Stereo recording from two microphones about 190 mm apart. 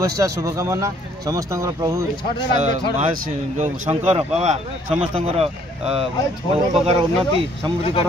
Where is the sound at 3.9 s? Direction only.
30° right (ahead or behind).